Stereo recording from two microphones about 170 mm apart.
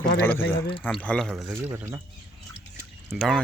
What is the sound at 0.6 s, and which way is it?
Speech, 30° left (ahead or behind).